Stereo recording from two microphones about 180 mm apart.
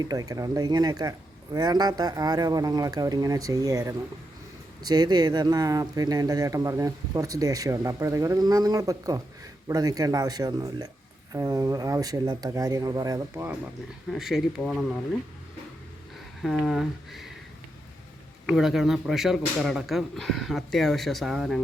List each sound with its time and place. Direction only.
0.0 s speech: 20° right (ahead or behind)
14.1 s speech: centre (ahead or behind)
16.4 s speech: centre (ahead or behind)
18.4 s speech: centre (ahead or behind)